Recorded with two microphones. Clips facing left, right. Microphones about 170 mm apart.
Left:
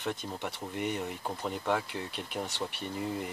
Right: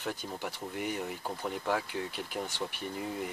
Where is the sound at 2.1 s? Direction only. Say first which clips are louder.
Even; 25° left (ahead or behind).